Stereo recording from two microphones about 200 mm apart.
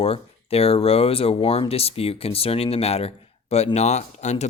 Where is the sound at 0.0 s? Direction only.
30° left (ahead or behind).